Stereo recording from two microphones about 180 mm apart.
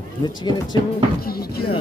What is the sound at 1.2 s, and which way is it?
Speech, 60° left (ahead or behind).